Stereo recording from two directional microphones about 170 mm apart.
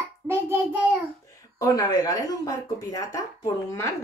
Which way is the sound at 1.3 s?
20° left (ahead or behind).